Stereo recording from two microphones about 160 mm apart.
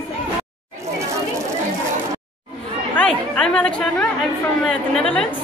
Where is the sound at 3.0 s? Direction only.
5° left (ahead or behind).